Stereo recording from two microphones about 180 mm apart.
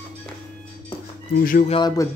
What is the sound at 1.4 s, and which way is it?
Speech, 50° left (ahead or behind).